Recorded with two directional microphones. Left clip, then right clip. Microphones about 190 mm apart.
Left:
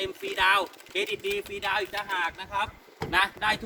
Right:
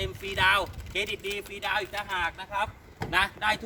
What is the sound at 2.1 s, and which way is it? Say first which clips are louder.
Speech: left 1 dB; centre (ahead or behind).